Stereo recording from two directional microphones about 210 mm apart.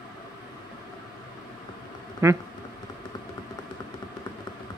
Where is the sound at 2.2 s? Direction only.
15° right (ahead or behind).